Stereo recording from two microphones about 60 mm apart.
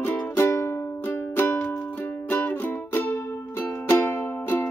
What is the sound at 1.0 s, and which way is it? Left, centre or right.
Music, left.